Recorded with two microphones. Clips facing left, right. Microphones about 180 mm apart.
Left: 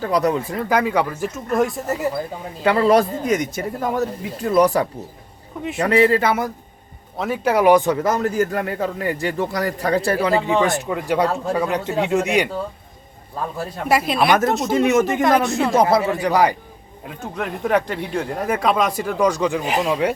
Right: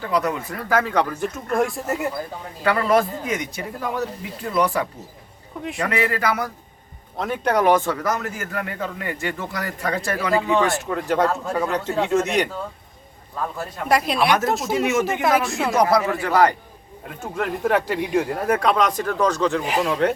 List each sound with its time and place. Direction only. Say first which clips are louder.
0.0 s a man's voice: left 4 dB; 35° left (ahead or behind)
0.7 s speech: left 1 dB; 15° left (ahead or behind)
2.6 s a man's voice: left 4 dB; 30° left (ahead or behind)
7.2 s a man's voice: left 2 dB; 5° left (ahead or behind)
13.8 s speech: left 2 dB; 5° left (ahead or behind)
15.7 s speech: left 1 dB; 25° left (ahead or behind)
17.1 s speech: right 1 dB; centre (ahead or behind)